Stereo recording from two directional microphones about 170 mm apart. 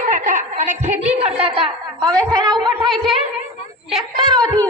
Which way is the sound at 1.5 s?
30° right (ahead or behind).